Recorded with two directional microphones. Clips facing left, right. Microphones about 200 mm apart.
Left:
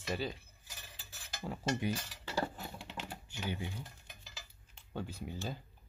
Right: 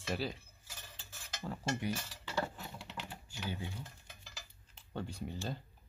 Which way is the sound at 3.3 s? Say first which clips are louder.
Left 2 dB; 20° left (ahead or behind).